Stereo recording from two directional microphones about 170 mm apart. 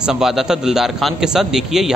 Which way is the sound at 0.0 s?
5° right (ahead or behind).